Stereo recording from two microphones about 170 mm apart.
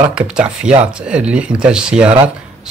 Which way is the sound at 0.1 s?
5° right (ahead or behind).